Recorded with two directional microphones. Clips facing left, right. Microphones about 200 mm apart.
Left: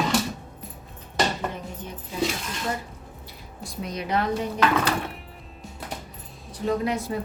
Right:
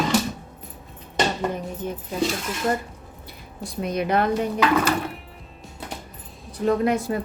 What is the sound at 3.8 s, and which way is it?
Speech, 55° right (ahead or behind).